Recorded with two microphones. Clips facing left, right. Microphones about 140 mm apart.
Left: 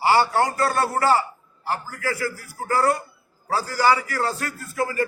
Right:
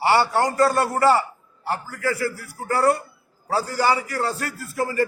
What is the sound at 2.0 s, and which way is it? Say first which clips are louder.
Speech: right 2 dB; 30° right (ahead or behind).